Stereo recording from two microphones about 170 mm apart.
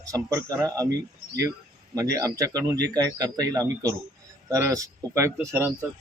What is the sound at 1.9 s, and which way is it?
Speech, 20° right (ahead or behind).